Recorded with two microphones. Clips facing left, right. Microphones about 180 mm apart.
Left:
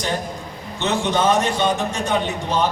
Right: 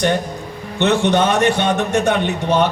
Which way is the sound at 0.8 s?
70° right (ahead or behind).